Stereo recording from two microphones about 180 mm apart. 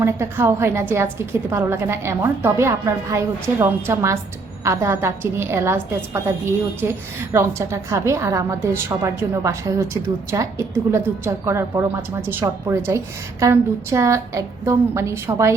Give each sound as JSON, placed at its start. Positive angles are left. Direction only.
{"t": 0.0, "sound": "a woman's voice", "side_deg": -15}